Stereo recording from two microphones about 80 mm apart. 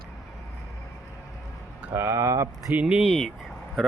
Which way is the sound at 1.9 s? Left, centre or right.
Right.